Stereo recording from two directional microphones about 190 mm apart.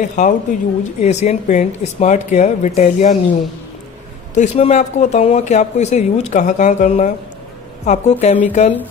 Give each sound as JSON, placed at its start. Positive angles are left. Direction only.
{"t": 0.0, "sound": "speech", "side_deg": 40}
{"t": 4.4, "sound": "speech", "side_deg": 35}